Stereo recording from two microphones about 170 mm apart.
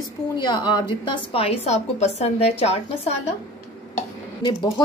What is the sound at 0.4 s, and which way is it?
A woman's voice, 25° left (ahead or behind).